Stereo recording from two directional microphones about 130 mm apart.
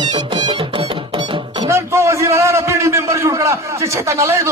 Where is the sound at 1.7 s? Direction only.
20° right (ahead or behind).